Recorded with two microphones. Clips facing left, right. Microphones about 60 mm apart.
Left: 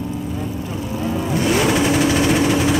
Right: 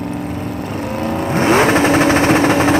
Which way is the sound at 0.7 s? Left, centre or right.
Right.